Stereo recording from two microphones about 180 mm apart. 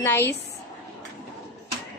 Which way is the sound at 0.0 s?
15° left (ahead or behind).